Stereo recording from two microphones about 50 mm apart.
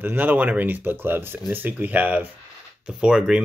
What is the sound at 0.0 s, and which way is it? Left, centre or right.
Speech, right.